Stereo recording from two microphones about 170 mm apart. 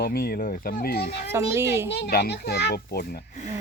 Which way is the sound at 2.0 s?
75° left (ahead or behind).